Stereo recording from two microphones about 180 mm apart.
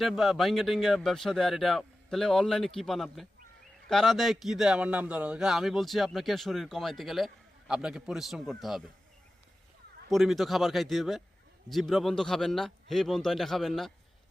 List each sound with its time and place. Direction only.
0.0 s speech: centre (ahead or behind)
10.1 s speech: centre (ahead or behind)